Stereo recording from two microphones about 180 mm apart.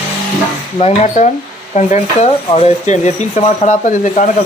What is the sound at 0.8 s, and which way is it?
Speech, 35° left (ahead or behind).